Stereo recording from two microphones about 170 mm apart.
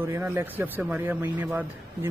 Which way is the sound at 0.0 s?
10° right (ahead or behind).